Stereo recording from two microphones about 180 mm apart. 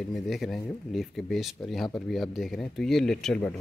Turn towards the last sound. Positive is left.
turn(degrees=5)  # may be behind; listen again after turning